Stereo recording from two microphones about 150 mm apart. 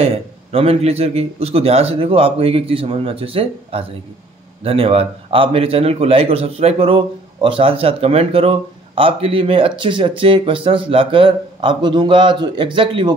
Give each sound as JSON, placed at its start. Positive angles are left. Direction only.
{"t": 0.0, "sound": "a man's voice", "side_deg": -40}